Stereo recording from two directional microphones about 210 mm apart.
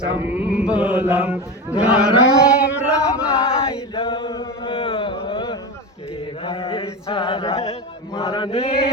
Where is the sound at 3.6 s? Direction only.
25° left (ahead or behind).